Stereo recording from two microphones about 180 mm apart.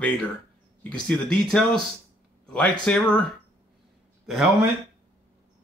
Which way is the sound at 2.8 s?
5° left (ahead or behind).